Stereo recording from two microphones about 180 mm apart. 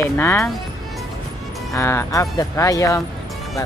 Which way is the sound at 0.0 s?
15° left (ahead or behind).